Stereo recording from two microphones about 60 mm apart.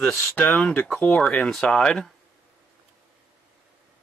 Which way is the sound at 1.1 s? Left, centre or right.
Centre.